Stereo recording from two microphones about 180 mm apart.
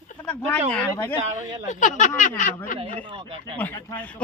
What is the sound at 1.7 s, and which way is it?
Speech, 45° left (ahead or behind).